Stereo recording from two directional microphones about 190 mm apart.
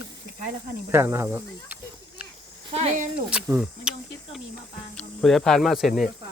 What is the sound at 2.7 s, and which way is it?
Speech, 35° right (ahead or behind).